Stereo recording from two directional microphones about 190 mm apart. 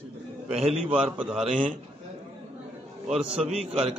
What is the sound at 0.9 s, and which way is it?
Speech, 30° right (ahead or behind).